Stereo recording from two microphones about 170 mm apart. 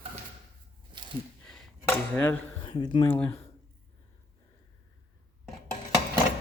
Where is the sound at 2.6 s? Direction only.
30° left (ahead or behind).